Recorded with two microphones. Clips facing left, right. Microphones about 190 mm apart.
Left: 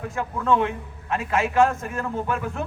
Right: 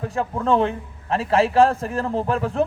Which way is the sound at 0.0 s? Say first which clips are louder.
Right 4 dB; 35° right (ahead or behind).